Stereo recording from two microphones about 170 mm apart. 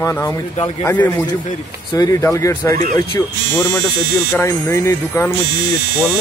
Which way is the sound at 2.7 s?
50° right (ahead or behind).